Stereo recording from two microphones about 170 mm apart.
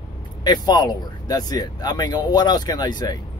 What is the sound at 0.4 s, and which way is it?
Speech, 25° left (ahead or behind).